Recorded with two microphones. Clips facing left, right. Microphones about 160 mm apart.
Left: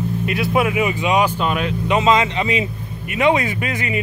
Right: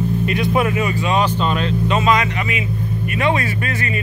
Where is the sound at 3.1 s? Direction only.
15° left (ahead or behind).